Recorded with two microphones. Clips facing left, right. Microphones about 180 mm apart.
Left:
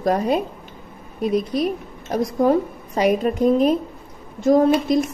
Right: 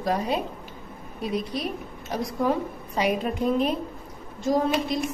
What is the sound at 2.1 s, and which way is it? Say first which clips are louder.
Speech: left 7 dB; 45° left (ahead or behind).